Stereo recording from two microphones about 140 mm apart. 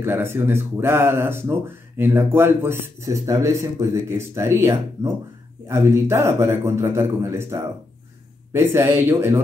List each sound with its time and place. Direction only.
0.0 s a man's voice: 15° right (ahead or behind)